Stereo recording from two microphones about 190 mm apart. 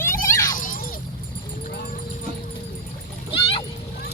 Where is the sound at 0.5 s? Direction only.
45° left (ahead or behind).